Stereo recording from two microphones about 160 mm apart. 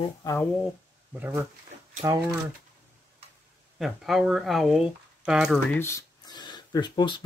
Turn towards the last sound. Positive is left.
turn(degrees=30)  # may be behind; listen again after turning